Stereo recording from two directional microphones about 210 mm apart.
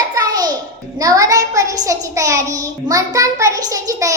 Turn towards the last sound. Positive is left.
turn(degrees=-15)  # may be behind; listen again after turning